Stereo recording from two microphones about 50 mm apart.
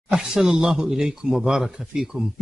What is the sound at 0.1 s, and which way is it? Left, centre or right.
Speech, centre.